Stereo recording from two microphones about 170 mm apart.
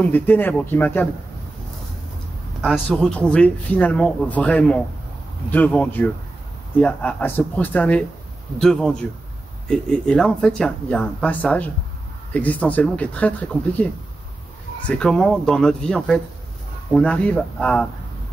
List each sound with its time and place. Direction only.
0.0 s speech: 10° left (ahead or behind)
2.6 s speech: centre (ahead or behind)
14.9 s speech: 5° left (ahead or behind)